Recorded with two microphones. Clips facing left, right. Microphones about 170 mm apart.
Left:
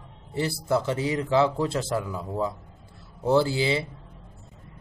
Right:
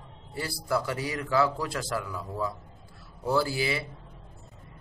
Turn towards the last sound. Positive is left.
turn(degrees=25)  # may be behind; listen again after turning